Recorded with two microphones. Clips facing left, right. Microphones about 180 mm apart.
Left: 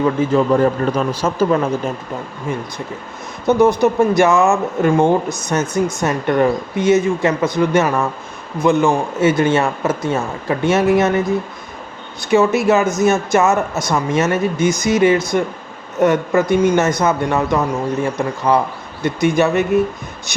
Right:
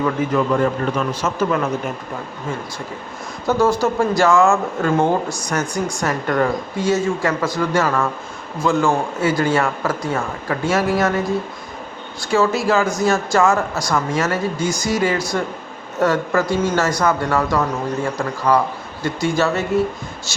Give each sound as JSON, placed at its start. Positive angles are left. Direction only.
{"t": 0.0, "sound": "a man's voice", "side_deg": 30}
{"t": 3.4, "sound": "speech", "side_deg": 20}
{"t": 12.3, "sound": "speech", "side_deg": 20}